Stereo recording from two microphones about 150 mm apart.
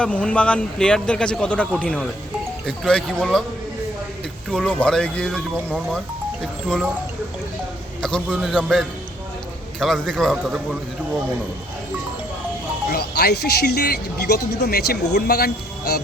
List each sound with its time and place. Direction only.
0.0 s a man's voice: 5° left (ahead or behind)
4.5 s speech: 5° left (ahead or behind)
8.0 s speech: 5° left (ahead or behind)
12.9 s speech: 90° left